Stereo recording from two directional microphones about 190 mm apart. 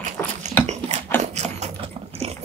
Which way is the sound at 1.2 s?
35° right (ahead or behind).